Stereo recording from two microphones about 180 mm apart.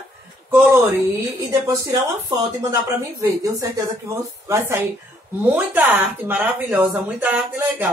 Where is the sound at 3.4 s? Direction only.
15° right (ahead or behind).